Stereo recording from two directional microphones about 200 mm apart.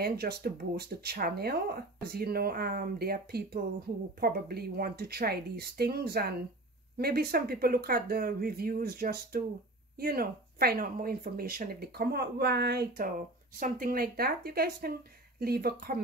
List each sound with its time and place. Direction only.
0.0 s speech: 50° right (ahead or behind)